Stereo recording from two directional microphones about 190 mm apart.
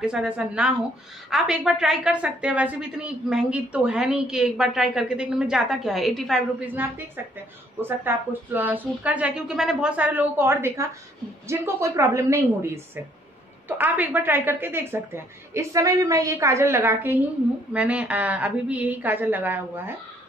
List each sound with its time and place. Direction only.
0.0 s a woman's voice: 5° right (ahead or behind)